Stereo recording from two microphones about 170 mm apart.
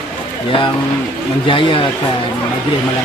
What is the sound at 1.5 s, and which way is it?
Speech, 30° left (ahead or behind).